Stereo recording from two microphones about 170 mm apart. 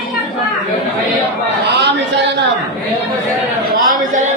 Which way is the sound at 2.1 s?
90° right.